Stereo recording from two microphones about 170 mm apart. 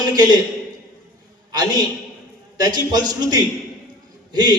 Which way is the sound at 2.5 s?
25° right (ahead or behind).